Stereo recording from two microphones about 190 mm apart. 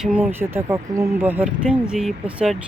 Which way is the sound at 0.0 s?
5° right (ahead or behind).